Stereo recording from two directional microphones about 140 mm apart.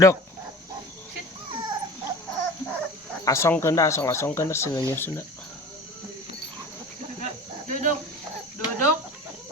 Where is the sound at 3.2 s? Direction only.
20° left (ahead or behind).